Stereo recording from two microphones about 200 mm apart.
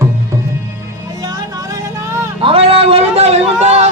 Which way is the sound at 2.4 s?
30° right (ahead or behind).